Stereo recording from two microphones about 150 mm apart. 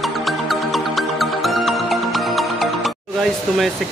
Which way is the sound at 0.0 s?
Centre (ahead or behind).